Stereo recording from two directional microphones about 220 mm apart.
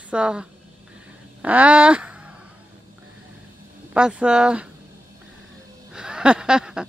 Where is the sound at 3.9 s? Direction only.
5° right (ahead or behind).